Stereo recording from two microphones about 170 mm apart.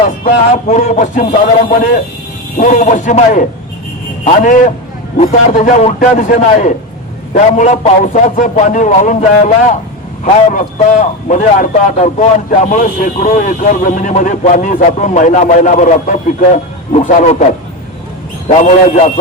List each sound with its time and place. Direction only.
0.3 s a man's voice: 45° left (ahead or behind)
10.5 s a man's voice: 45° left (ahead or behind)
18.4 s a man's voice: 40° left (ahead or behind)